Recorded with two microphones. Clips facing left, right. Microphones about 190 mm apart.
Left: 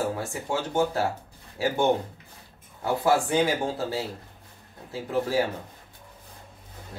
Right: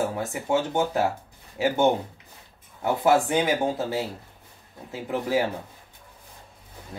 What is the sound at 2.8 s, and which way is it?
Speech, 20° right (ahead or behind).